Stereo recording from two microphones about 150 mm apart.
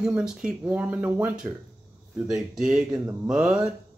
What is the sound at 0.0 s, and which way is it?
Speech, 5° right (ahead or behind).